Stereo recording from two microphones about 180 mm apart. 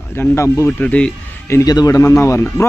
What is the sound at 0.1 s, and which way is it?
Speech, 15° left (ahead or behind).